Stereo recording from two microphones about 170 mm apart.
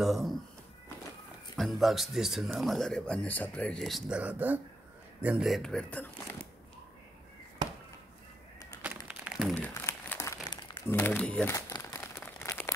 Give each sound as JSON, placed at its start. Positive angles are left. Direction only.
{"t": 0.0, "sound": "speech", "side_deg": 0}
{"t": 1.6, "sound": "speech", "side_deg": 0}
{"t": 8.8, "sound": "a sound", "side_deg": -10}
{"t": 9.6, "sound": "crumpling", "side_deg": 10}
{"t": 11.5, "sound": "crumpling", "side_deg": 20}